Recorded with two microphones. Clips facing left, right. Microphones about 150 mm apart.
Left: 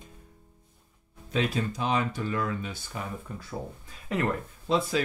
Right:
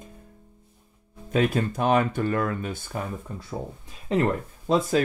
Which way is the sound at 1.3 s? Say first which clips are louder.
Right 5 dB; 50° right (ahead or behind).